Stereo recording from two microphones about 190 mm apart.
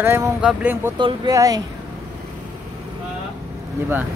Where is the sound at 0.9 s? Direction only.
25° right (ahead or behind).